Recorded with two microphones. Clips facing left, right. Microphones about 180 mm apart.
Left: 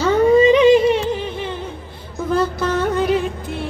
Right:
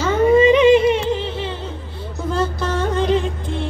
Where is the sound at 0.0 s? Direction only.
35° left (ahead or behind).